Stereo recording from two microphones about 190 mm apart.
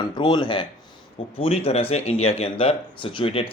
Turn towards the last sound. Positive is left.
turn(degrees=30)  # may be behind; listen again after turning